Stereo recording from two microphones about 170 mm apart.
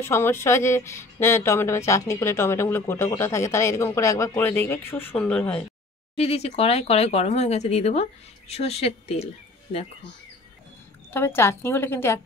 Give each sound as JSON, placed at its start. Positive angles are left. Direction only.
{"t": 0.0, "sound": "speech", "side_deg": 15}
{"t": 6.1, "sound": "speech", "side_deg": 35}
{"t": 11.1, "sound": "speech", "side_deg": 15}